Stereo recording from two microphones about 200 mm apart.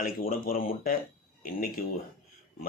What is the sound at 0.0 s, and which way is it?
Speech, 45° left (ahead or behind).